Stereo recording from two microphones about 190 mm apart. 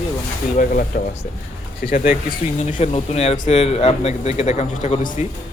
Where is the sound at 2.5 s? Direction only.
35° left (ahead or behind).